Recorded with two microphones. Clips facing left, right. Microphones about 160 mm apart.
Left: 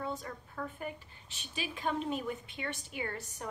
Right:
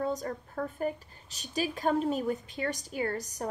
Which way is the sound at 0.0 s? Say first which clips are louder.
Right 7 dB; 40° right (ahead or behind).